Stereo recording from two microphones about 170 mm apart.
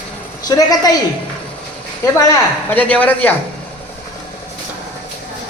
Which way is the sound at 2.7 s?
10° left (ahead or behind).